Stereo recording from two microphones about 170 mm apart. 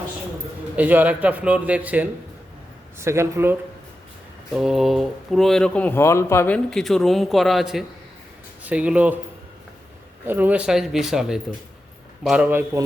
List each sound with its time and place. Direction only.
0.8 s a man's voice: 10° right (ahead or behind)
4.5 s speech: centre (ahead or behind); by 6.6 s 15° left (ahead or behind)
6.7 s a man's voice: centre (ahead or behind)
10.2 s a man's voice: 10° right (ahead or behind)